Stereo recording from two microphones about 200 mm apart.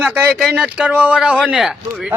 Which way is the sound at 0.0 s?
5° right (ahead or behind).